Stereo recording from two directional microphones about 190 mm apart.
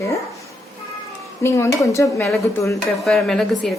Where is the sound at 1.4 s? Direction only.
15° left (ahead or behind).